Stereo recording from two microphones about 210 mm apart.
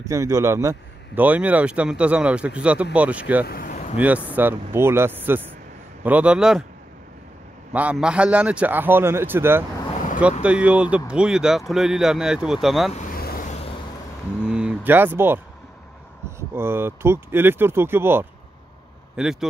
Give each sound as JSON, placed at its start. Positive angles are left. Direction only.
{"t": 0.1, "sound": "speech", "side_deg": -15}
{"t": 3.4, "sound": "vehicle", "side_deg": 45}
{"t": 4.0, "sound": "speech", "side_deg": -5}
{"t": 7.7, "sound": "speech", "side_deg": -5}
{"t": 12.9, "sound": "vehicle", "side_deg": 40}
{"t": 14.4, "sound": "speech", "side_deg": -5}